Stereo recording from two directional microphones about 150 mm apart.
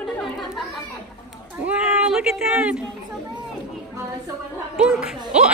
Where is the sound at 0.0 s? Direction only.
Centre (ahead or behind).